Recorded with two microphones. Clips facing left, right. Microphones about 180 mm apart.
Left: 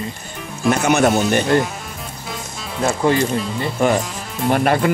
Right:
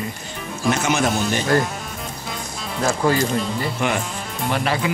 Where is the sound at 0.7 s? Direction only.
60° left (ahead or behind).